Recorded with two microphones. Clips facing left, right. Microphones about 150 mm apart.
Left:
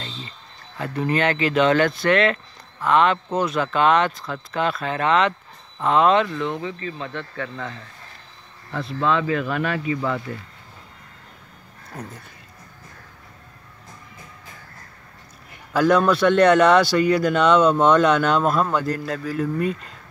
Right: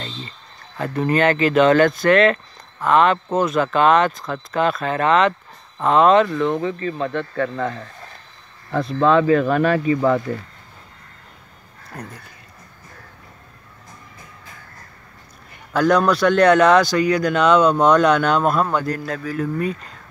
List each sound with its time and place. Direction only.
0.7 s speech: 45° right (ahead or behind)
11.9 s speech: centre (ahead or behind)
15.7 s a man's voice: 5° left (ahead or behind)